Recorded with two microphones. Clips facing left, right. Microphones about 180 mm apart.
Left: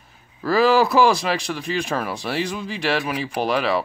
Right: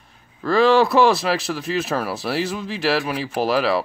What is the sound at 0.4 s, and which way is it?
Speech, 5° left (ahead or behind).